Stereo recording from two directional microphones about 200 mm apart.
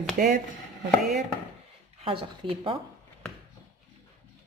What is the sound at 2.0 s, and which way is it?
Speech, 25° right (ahead or behind).